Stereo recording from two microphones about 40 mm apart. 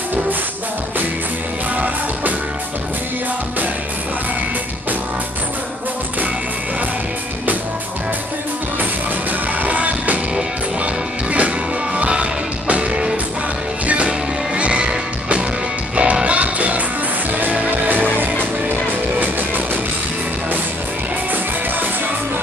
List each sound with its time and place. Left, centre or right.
9.6 s music: right
11.2 s music: right
19.1 s music: right